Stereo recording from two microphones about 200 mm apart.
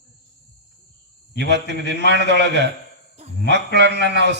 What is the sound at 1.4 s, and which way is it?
A man's voice, 60° right (ahead or behind).